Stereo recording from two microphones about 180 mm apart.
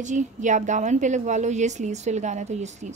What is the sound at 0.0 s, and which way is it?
A woman's voice, 45° right (ahead or behind).